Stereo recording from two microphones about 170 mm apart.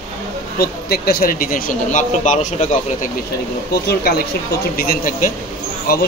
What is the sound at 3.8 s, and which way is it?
Speech, 65° left (ahead or behind).